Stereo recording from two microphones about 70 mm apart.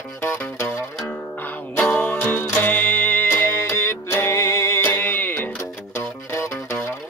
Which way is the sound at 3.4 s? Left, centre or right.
Left.